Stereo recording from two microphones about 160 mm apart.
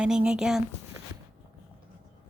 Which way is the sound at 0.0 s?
5° right (ahead or behind).